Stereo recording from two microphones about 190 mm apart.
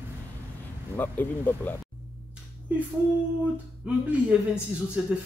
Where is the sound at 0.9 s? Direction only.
10° left (ahead or behind).